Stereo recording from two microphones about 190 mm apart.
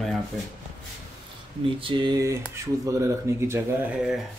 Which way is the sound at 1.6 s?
25° right (ahead or behind).